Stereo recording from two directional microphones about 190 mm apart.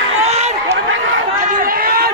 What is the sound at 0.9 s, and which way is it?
Run, 80° right.